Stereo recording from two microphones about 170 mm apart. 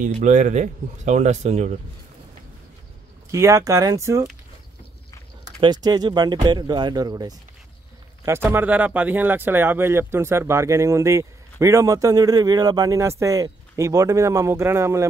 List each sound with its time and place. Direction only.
0.0 s speech: 45° right (ahead or behind)
3.3 s speech: 20° right (ahead or behind)
5.4 s speech: 25° right (ahead or behind)
8.5 s speech: 10° right (ahead or behind)